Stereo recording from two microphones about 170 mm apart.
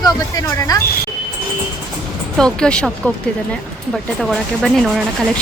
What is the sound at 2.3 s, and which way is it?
Speech, 5° left (ahead or behind).